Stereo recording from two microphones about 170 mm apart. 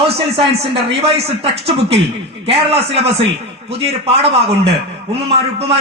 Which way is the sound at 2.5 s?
35° right (ahead or behind).